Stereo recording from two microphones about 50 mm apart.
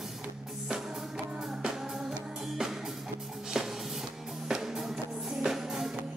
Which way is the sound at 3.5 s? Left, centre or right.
Centre.